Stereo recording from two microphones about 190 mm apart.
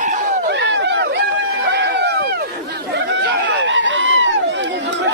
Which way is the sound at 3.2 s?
70° right (ahead or behind).